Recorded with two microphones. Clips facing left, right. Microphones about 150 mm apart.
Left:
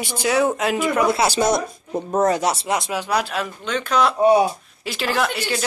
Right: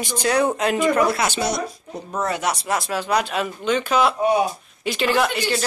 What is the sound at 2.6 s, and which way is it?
Speech, 20° left (ahead or behind).